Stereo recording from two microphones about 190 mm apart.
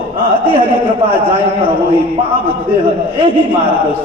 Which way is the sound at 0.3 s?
25° left (ahead or behind).